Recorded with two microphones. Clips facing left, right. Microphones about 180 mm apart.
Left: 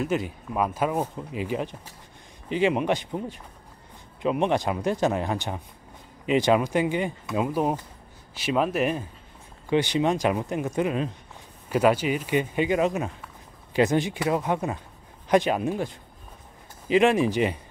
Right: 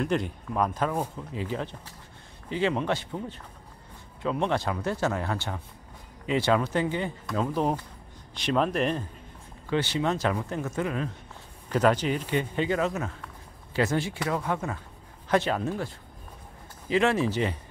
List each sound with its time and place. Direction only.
0.0 s speech: 5° left (ahead or behind)